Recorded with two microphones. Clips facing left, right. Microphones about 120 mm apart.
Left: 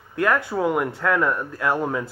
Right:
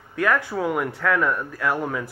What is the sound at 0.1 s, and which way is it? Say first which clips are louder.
Speech: left 1 dB; 15° left (ahead or behind).